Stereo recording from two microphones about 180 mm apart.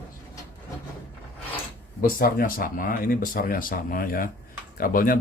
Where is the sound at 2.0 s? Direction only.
50° left (ahead or behind).